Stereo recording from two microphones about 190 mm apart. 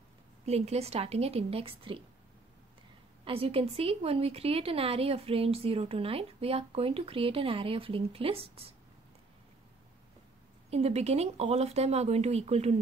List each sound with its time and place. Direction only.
0.5 s a woman's voice: 35° right (ahead or behind)
3.3 s a woman's voice: 30° right (ahead or behind)
10.7 s a woman's voice: 35° right (ahead or behind)